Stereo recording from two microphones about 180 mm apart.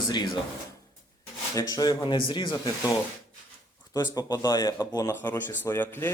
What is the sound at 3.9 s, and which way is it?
Speech, 20° left (ahead or behind).